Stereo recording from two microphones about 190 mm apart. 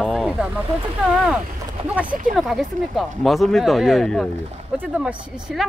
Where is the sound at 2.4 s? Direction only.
Centre (ahead or behind).